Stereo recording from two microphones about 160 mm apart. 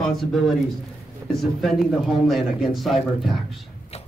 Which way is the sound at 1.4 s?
Centre (ahead or behind).